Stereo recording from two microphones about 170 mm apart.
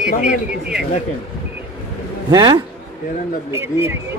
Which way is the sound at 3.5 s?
15° right (ahead or behind).